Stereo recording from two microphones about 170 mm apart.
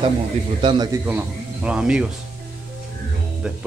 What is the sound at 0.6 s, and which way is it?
Speech, 30° right (ahead or behind).